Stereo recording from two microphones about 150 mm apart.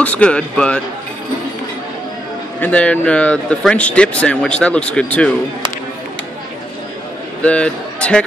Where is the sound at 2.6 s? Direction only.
10° left (ahead or behind).